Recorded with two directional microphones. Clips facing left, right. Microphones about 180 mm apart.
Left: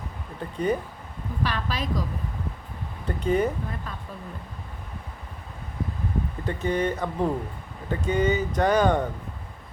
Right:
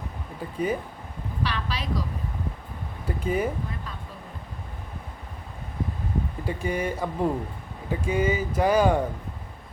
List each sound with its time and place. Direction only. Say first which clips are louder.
0.3 s speech: left 2 dB; 5° right (ahead or behind)
1.5 s a sound: left 2 dB; 45° left (ahead or behind)
3.1 s speech: left 3 dB; 5° right (ahead or behind)
6.4 s speech: left 3 dB; 10° right (ahead or behind)